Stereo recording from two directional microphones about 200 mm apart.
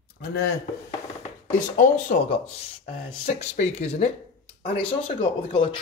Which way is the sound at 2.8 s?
35° left (ahead or behind).